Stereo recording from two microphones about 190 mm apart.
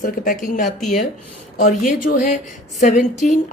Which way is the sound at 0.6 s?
Centre (ahead or behind).